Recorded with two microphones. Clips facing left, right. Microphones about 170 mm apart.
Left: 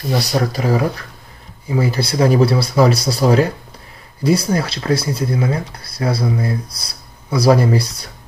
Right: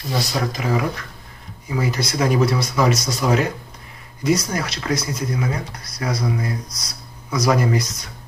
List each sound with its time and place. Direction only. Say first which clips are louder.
0.2 s speech: left 5 dB; 35° left (ahead or behind)